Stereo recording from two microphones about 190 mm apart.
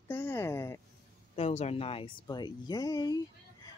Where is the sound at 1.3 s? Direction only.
35° left (ahead or behind).